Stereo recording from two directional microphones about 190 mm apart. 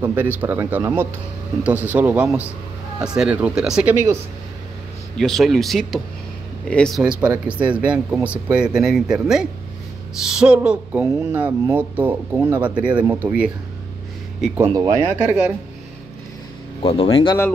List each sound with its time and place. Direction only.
0.0 s speech: 10° right (ahead or behind)
5.1 s speech: centre (ahead or behind)
14.6 s speech: 20° right (ahead or behind)
15.1 s speech: 5° right (ahead or behind)
16.8 s speech: 30° left (ahead or behind)